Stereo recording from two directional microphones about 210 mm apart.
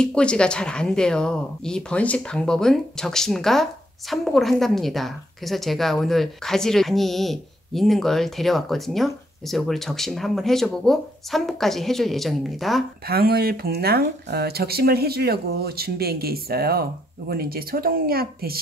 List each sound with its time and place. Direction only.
0.0 s a woman's voice: 5° left (ahead or behind)
13.1 s speech: 45° right (ahead or behind)